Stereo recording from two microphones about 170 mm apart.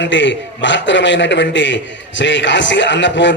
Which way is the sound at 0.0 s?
90° left.